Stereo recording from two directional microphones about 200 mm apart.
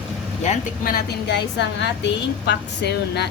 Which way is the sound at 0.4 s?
40° left (ahead or behind).